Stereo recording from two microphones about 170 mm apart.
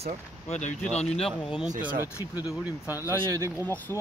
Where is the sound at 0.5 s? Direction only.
45° left (ahead or behind).